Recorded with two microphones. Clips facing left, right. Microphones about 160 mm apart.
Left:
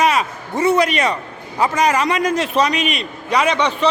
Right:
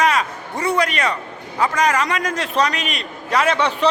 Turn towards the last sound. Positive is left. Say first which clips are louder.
# left 1 dB
turn(degrees=-10)  # may be behind; listen again after turning